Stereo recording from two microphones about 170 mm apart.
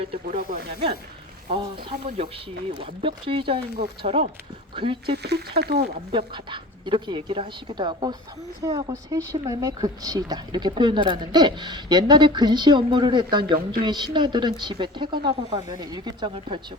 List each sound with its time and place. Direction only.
0.3 s speech: 65° right (ahead or behind)
1.5 s speech: 35° right (ahead or behind)
5.0 s speech: 75° right (ahead or behind)
6.1 s speech: 30° right (ahead or behind)